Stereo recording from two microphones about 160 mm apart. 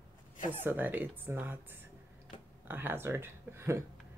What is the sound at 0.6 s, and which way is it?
Speech, 10° right (ahead or behind).